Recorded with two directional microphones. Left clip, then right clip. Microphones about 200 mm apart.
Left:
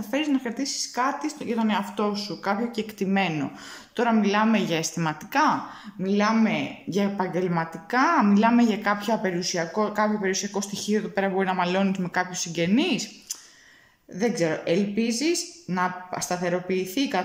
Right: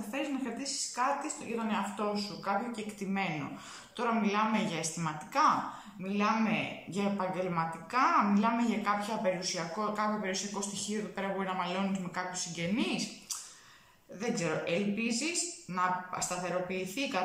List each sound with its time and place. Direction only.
0.1 s speech: 45° left (ahead or behind)